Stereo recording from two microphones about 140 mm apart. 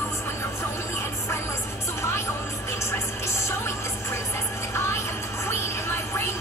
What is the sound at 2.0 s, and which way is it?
Music, 20° left (ahead or behind).